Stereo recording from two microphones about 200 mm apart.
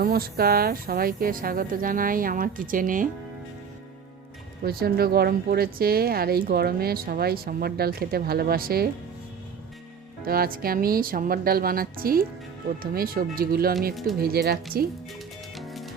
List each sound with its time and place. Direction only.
0.0 s speech: 50° right (ahead or behind)
4.6 s speech: 50° right (ahead or behind)
10.2 s speech: 45° right (ahead or behind)
15.5 s music: centre (ahead or behind)